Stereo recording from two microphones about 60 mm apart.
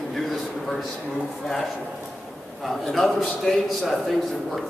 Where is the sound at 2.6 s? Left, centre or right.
Centre.